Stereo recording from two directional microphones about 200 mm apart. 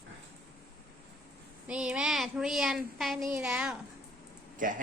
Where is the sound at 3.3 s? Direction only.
5° right (ahead or behind).